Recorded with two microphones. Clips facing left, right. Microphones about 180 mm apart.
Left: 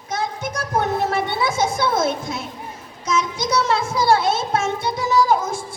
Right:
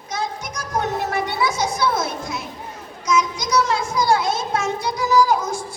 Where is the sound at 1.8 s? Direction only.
20° left (ahead or behind).